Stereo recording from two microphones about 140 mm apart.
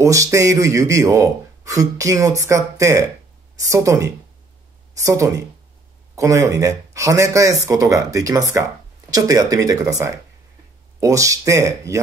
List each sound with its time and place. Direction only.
0.0 s a man's voice: 20° right (ahead or behind)